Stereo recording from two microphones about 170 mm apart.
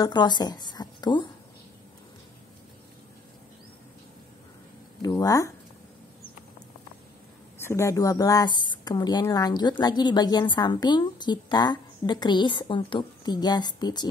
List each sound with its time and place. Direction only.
0.0 s a woman's voice: 25° left (ahead or behind)
5.0 s a woman's voice: 20° left (ahead or behind)
7.6 s a woman's voice: 15° left (ahead or behind)